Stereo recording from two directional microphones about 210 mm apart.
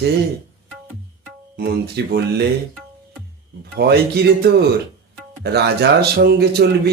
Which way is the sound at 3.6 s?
50° right (ahead or behind).